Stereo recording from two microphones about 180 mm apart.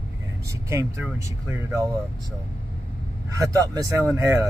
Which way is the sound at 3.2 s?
20° right (ahead or behind).